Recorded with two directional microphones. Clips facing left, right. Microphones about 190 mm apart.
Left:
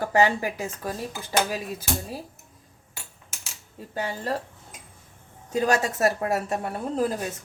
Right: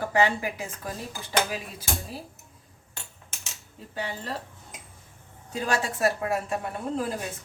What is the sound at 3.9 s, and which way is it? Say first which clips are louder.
Speech: left 4 dB; 45° left (ahead or behind).